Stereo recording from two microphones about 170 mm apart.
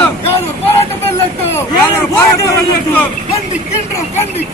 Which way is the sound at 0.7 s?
15° left (ahead or behind).